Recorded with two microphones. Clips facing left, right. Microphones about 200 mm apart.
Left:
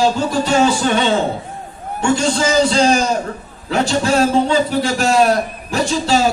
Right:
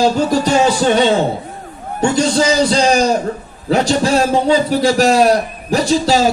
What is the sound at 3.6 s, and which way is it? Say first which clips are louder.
Speech: right 3 dB; 35° right (ahead or behind).